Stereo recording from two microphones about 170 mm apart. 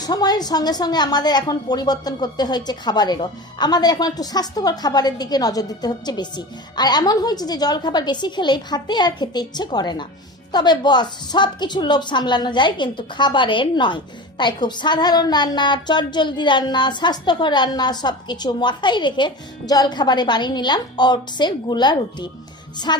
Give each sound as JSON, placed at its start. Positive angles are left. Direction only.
{"t": 0.0, "sound": "a woman's voice", "side_deg": 25}